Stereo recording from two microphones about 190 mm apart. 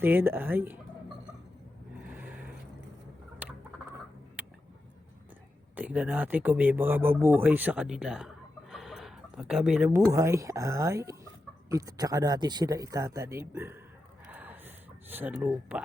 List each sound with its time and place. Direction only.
0.0 s speech: 10° right (ahead or behind)
2.0 s vehicle: 10° right (ahead or behind)
3.4 s rodents: 5° right (ahead or behind)
5.7 s speech: 10° right (ahead or behind)
8.7 s a sound: centre (ahead or behind)
9.9 s speech: 15° right (ahead or behind)
14.3 s a sound: 10° right (ahead or behind)
15.1 s speech: 10° right (ahead or behind)